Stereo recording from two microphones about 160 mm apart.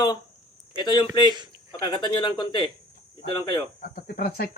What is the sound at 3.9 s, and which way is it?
Speech, 75° left (ahead or behind).